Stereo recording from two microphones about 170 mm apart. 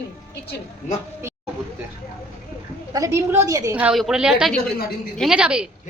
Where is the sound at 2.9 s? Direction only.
20° right (ahead or behind).